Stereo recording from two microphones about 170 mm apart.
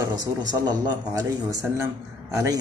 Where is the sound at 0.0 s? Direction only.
25° right (ahead or behind).